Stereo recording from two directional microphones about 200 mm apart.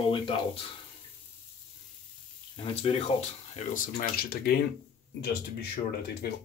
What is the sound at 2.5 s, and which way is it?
Speech, 30° left (ahead or behind).